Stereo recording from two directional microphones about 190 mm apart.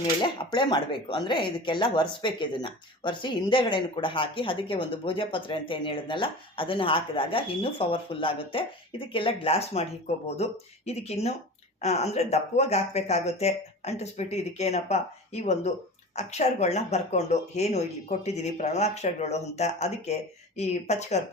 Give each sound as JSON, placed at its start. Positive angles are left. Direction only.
{"t": 0.0, "sound": "speech", "side_deg": 25}